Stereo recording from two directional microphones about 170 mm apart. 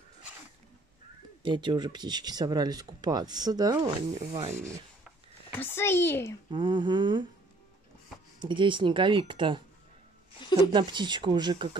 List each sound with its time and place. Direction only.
1.4 s speech: 25° right (ahead or behind)
4.1 s speech: 40° right (ahead or behind)
4.5 s rub: 15° right (ahead or behind)
5.5 s a child's voice: 15° left (ahead or behind)
6.5 s speech: 25° right (ahead or behind)
8.4 s speech: 30° right (ahead or behind)
10.7 s speech: 25° right (ahead or behind)